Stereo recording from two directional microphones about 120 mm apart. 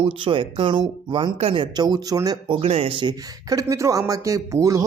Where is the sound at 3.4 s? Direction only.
25° right (ahead or behind).